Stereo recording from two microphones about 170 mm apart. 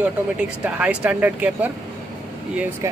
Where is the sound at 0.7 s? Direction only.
5° right (ahead or behind).